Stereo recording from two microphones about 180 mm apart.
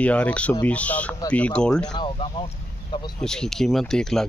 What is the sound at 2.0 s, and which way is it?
Speech, 30° left (ahead or behind).